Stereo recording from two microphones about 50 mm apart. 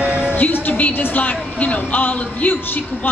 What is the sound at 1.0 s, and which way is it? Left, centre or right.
Speech, left.